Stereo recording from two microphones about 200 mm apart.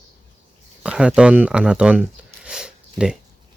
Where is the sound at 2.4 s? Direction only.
5° right (ahead or behind).